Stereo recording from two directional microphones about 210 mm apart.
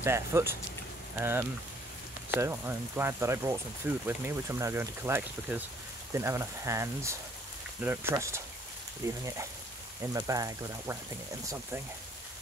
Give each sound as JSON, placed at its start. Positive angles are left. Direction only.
{"t": 0.0, "sound": "speech", "side_deg": -10}